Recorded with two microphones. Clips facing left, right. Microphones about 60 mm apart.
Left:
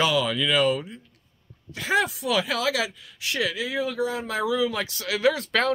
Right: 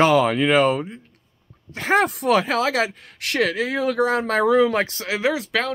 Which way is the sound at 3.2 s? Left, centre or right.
Right.